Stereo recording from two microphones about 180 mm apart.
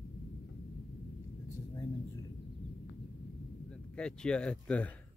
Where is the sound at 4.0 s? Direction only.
5° left (ahead or behind).